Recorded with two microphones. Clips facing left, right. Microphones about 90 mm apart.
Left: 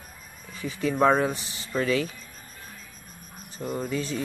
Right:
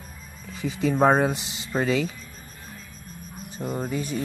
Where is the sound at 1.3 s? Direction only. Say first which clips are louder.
Right 3 dB; 20° right (ahead or behind).